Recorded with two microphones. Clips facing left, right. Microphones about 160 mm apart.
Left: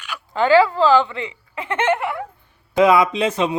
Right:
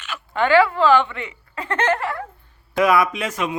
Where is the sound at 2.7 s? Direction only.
20° left (ahead or behind).